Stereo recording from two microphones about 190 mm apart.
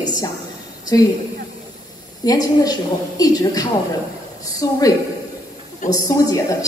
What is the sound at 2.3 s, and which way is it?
A woman's voice, 20° left (ahead or behind).